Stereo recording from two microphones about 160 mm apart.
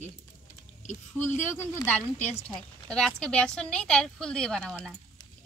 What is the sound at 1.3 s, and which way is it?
Speech, 50° left (ahead or behind).